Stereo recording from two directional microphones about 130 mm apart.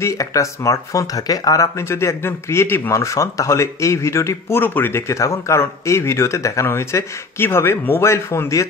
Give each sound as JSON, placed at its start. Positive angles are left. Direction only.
{"t": 0.0, "sound": "speech", "side_deg": 25}